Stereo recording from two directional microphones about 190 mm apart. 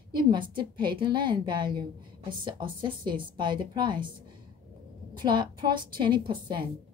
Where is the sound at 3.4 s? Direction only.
25° right (ahead or behind).